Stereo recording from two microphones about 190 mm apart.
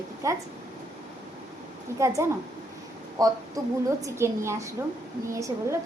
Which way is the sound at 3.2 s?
20° right (ahead or behind).